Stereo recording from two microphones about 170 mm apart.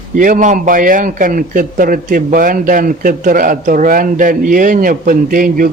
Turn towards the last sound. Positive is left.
turn(degrees=-55)  # may be behind; listen again after turning